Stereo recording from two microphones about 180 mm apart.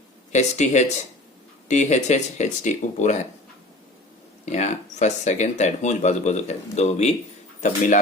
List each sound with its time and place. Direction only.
0.3 s speech: 40° left (ahead or behind)
4.4 s speech: 40° left (ahead or behind)